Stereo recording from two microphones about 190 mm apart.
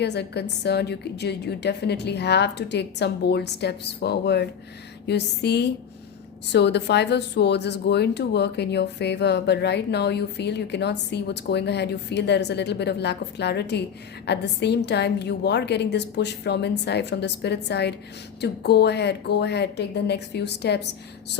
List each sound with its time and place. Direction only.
0.0 s a woman's voice: 60° left (ahead or behind)